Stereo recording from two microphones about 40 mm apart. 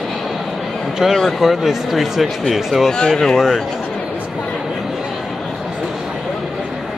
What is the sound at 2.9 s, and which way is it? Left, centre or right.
Speech, centre.